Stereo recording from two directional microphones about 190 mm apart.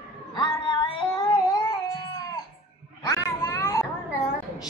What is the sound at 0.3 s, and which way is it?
Cat, 25° left (ahead or behind).